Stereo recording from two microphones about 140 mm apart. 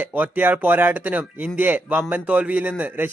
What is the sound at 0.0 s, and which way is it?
Speech, 15° right (ahead or behind).